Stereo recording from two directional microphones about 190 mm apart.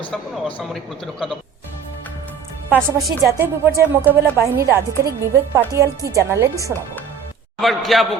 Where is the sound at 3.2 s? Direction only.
15° right (ahead or behind).